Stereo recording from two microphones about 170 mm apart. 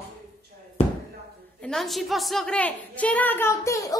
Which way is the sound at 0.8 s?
35° left (ahead or behind).